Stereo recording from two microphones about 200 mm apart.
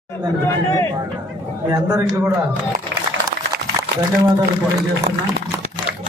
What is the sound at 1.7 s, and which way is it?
Speech, 15° right (ahead or behind).